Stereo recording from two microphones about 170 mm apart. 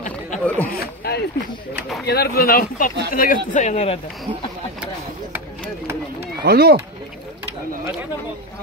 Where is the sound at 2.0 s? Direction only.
65° left (ahead or behind).